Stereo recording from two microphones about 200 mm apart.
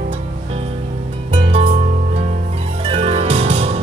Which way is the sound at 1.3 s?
30° right (ahead or behind).